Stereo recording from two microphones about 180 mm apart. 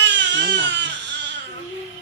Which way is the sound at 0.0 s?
75° right (ahead or behind).